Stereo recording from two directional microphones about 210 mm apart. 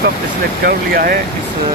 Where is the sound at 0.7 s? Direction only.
45° right (ahead or behind).